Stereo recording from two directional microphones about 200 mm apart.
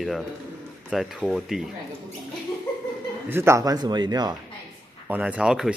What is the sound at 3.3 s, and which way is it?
Speech, 15° right (ahead or behind).